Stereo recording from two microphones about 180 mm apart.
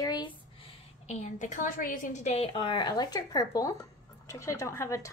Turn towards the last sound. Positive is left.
turn(degrees=15)  # may be behind; listen again after turning